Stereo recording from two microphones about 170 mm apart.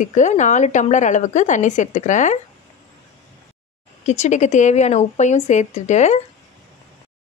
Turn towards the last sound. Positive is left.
turn(degrees=45)  # may be behind; listen again after turning